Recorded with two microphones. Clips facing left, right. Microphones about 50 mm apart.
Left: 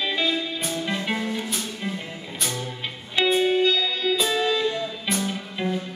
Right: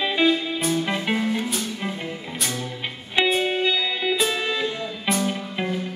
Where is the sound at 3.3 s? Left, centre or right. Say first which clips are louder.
Left 2 dB; centre.